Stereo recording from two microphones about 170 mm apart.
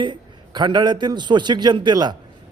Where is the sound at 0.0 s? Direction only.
25° right (ahead or behind).